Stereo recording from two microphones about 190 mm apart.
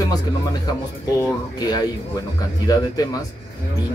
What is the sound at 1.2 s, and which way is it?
Speech, 20° left (ahead or behind).